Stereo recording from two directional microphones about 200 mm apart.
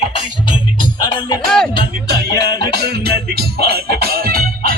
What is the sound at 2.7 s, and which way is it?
Music, 55° right (ahead or behind).